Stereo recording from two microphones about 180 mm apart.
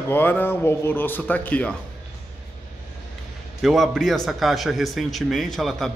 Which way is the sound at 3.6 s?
Centre (ahead or behind).